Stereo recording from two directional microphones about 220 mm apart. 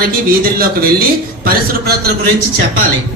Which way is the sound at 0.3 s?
40° right (ahead or behind).